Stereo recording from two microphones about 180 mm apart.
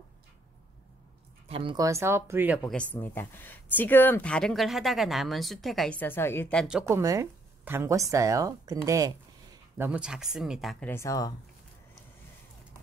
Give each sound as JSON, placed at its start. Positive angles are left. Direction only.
{"t": 1.5, "sound": "a woman's voice", "side_deg": -30}
{"t": 1.9, "sound": "speech", "side_deg": -15}
{"t": 2.6, "sound": "speech", "side_deg": 5}
{"t": 6.9, "sound": "a woman's voice", "side_deg": -15}
{"t": 9.8, "sound": "speech", "side_deg": -5}
{"t": 10.9, "sound": "speech", "side_deg": 15}